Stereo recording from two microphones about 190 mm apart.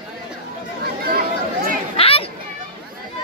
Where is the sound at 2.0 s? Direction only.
30° left (ahead or behind).